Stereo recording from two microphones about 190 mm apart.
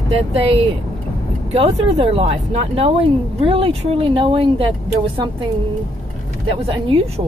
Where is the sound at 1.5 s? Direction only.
30° right (ahead or behind).